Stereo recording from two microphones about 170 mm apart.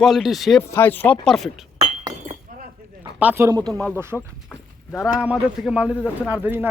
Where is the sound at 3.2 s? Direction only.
15° right (ahead or behind).